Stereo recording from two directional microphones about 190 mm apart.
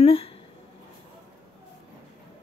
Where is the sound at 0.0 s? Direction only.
30° left (ahead or behind).